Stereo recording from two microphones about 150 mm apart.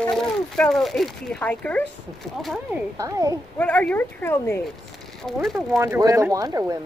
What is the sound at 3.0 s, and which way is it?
Speech, 25° right (ahead or behind).